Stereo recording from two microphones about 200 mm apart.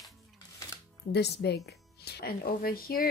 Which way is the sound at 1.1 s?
55° left (ahead or behind).